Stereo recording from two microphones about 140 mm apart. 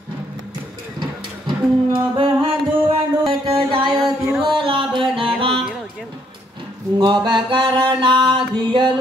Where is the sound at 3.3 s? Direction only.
35° right (ahead or behind).